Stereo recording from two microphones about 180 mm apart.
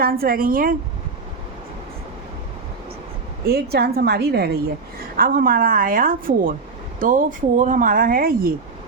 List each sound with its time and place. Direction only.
0.0 s speech: 55° right (ahead or behind)
3.4 s a woman's voice: 60° right (ahead or behind)